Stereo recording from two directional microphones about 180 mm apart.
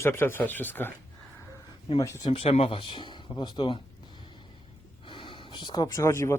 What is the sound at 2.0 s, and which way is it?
Speech, 20° left (ahead or behind).